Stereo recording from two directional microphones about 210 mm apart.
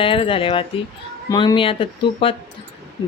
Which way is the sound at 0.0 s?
25° left (ahead or behind).